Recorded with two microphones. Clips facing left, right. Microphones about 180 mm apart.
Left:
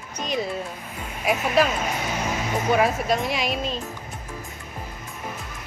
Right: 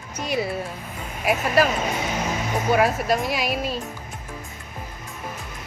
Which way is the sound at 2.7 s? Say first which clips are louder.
Right 1 dB; centre (ahead or behind).